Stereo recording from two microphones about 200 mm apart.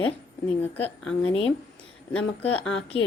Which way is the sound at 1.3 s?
30° left (ahead or behind).